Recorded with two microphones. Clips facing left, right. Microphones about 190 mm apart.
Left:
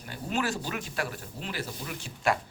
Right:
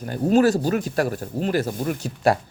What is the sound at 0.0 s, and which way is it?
Speech, 45° right (ahead or behind).